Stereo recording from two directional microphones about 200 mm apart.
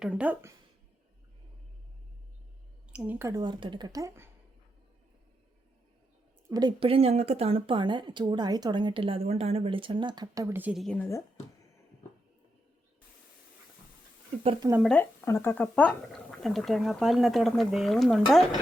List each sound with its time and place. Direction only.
0.0 s speech: 5° right (ahead or behind)
2.9 s speech: 5° right (ahead or behind)
6.5 s a woman's voice: 20° right (ahead or behind); by 11.2 s 10° left (ahead or behind)
14.8 s speech: 5° left (ahead or behind)